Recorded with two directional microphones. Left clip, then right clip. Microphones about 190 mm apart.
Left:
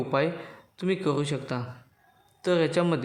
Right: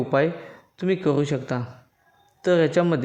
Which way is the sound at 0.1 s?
20° right (ahead or behind).